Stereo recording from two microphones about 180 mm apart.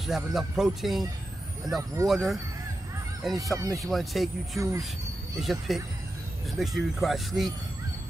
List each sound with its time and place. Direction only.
0.0 s speech: centre (ahead or behind)
2.0 s speech: centre (ahead or behind)
3.5 s speech: 20° right (ahead or behind)
3.9 s speech: centre (ahead or behind)
4.6 s speech: 15° right (ahead or behind)
5.4 s speech: centre (ahead or behind)